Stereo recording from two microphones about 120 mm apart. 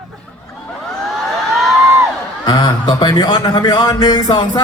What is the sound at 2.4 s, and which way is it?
A man's voice, 35° left (ahead or behind).